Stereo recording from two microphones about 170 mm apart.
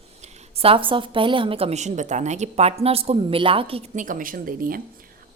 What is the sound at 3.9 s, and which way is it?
Speech, 50° right (ahead or behind).